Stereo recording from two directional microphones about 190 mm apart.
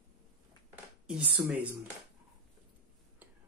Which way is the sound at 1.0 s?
5° right (ahead or behind).